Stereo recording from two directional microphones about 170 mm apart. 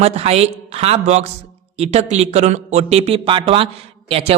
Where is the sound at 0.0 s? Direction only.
40° right (ahead or behind).